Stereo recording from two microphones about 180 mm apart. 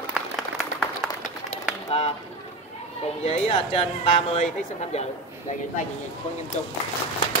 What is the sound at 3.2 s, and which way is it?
Speech, 35° left (ahead or behind).